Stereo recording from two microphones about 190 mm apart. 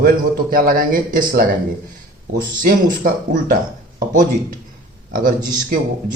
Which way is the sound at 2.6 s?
50° right (ahead or behind).